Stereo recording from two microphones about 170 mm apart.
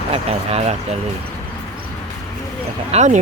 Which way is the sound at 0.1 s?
35° right (ahead or behind).